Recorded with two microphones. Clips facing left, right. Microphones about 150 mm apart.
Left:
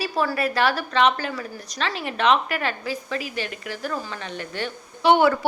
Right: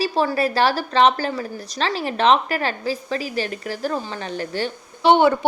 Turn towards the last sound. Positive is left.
turn(degrees=-25)  # may be behind; listen again after turning